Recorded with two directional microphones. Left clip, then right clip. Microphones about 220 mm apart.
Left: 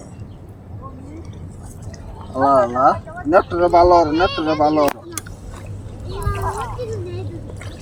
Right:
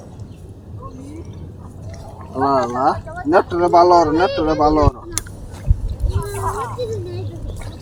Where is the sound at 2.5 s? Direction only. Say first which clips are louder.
Left 3 dB; 25° left (ahead or behind).